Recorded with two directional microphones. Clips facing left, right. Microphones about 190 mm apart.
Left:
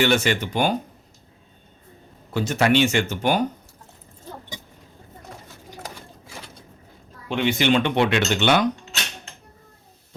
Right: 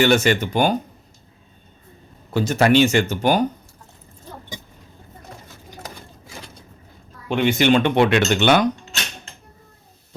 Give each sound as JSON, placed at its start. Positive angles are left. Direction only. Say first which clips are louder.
{"t": 0.0, "sound": "speech", "louder": "right 4 dB", "side_deg": -45}
{"t": 2.3, "sound": "speech", "louder": "right 3 dB", "side_deg": -40}
{"t": 7.3, "sound": "speech", "louder": "right 3 dB", "side_deg": -50}